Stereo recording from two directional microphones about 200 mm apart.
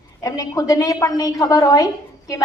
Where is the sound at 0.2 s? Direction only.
15° left (ahead or behind).